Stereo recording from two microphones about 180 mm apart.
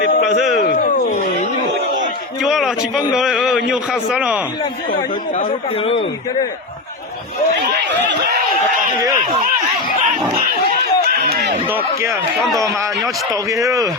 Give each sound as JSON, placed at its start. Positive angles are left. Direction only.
{"t": 0.3, "sound": "a man's voice", "side_deg": 0}
{"t": 2.4, "sound": "a sound", "side_deg": 0}
{"t": 3.2, "sound": "a man's voice", "side_deg": 0}
{"t": 10.7, "sound": "run", "side_deg": -60}
{"t": 13.5, "sound": "speech", "side_deg": -20}